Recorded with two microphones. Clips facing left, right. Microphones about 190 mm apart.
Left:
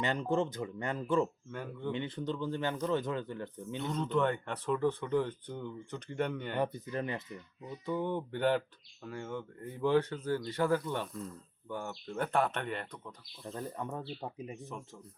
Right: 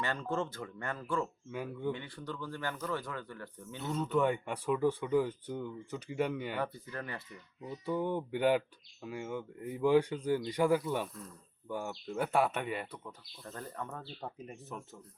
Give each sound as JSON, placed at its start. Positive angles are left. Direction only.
{"t": 0.0, "sound": "speech", "side_deg": 20}
{"t": 1.5, "sound": "speech", "side_deg": -5}
{"t": 1.9, "sound": "speech", "side_deg": 20}
{"t": 3.8, "sound": "speech", "side_deg": -5}
{"t": 6.6, "sound": "speech", "side_deg": 20}
{"t": 7.6, "sound": "speech", "side_deg": -5}
{"t": 13.4, "sound": "speech", "side_deg": 15}
{"t": 14.5, "sound": "speech", "side_deg": -5}